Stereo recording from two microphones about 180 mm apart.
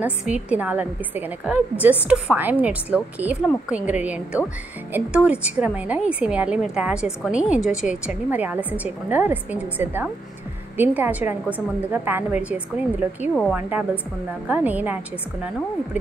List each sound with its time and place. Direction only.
0.0 s a woman's voice: 5° right (ahead or behind)
13.3 s speech: 5° left (ahead or behind)
13.6 s a woman's voice: 10° right (ahead or behind)